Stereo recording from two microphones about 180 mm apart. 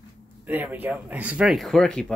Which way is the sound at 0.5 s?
10° right (ahead or behind).